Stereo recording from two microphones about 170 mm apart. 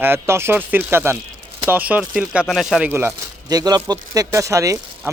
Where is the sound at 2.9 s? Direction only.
15° right (ahead or behind).